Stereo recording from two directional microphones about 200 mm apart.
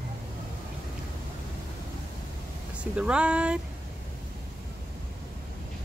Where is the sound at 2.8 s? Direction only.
5° right (ahead or behind).